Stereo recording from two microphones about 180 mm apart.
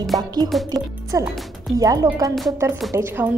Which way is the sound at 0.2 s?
20° right (ahead or behind).